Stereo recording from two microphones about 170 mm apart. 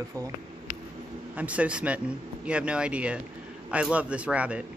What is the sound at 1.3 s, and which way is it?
Speech, 10° right (ahead or behind).